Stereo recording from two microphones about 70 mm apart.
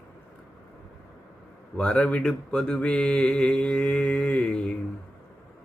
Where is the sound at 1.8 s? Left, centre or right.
Centre.